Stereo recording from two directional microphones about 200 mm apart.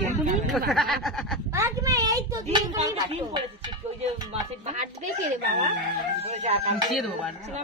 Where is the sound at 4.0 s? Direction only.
35° right (ahead or behind).